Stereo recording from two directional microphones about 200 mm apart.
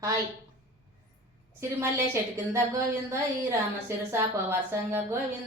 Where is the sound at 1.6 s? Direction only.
15° right (ahead or behind).